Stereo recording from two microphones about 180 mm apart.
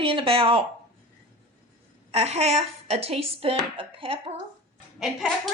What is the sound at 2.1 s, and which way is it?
A woman's voice, 35° right (ahead or behind).